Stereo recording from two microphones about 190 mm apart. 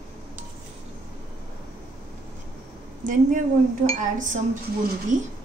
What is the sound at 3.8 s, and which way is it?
Speech, 40° right (ahead or behind).